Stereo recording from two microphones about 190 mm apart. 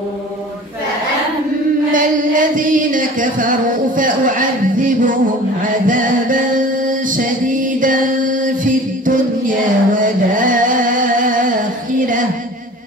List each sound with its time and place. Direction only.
1.9 s music: 45° right (ahead or behind)